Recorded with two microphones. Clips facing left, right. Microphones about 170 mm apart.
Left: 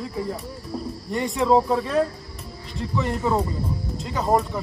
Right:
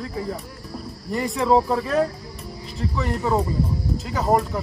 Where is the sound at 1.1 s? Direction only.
Centre (ahead or behind).